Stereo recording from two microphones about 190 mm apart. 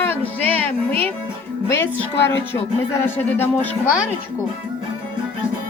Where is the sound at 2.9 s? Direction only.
10° left (ahead or behind).